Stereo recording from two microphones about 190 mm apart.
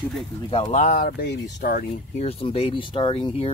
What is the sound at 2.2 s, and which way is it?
Speech, 30° left (ahead or behind).